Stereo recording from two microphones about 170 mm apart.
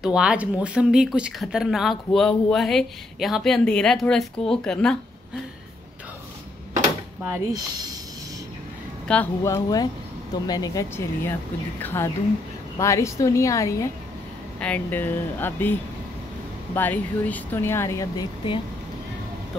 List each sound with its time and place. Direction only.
0.0 s speech: 5° right (ahead or behind)
7.3 s speech: 20° right (ahead or behind)
9.0 s speech: 5° left (ahead or behind)
9.4 s speech: 20° left (ahead or behind)